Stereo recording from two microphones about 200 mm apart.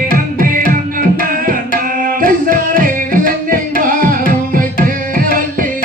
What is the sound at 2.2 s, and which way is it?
Music, 45° right (ahead or behind).